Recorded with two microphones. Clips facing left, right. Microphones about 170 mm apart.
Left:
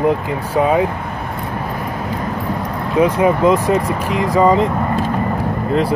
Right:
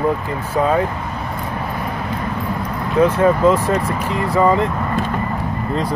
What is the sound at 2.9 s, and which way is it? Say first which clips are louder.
Speech: even; 15° left (ahead or behind).